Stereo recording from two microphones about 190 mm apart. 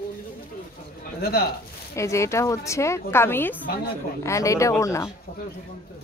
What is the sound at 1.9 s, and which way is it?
Speech, 15° left (ahead or behind).